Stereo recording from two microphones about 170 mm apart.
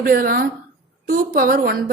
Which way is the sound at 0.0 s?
55° right (ahead or behind).